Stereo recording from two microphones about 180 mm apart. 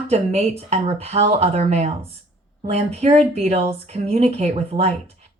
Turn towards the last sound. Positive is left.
turn(degrees=-35)  # may be behind; listen again after turning